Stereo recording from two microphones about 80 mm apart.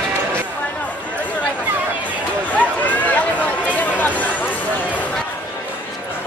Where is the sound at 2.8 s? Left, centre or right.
Left.